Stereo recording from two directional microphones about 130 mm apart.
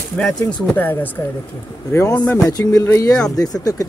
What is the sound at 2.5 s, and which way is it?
Speech, 30° left (ahead or behind).